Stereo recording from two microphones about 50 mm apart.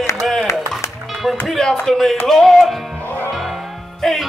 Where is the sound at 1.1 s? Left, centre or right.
Centre.